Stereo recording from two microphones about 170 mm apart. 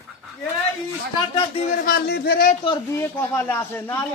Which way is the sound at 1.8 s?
65° left (ahead or behind).